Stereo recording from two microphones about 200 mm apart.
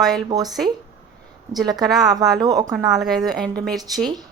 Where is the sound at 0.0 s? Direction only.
Centre (ahead or behind).